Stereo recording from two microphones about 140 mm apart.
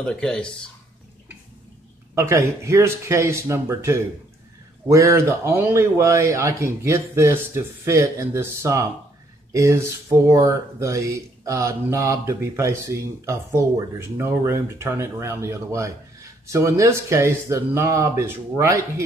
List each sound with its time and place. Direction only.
0.0 s speech: 5° left (ahead or behind)
2.1 s speech: 20° right (ahead or behind)